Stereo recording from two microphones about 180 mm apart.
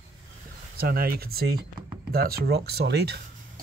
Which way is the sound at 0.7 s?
55° right (ahead or behind).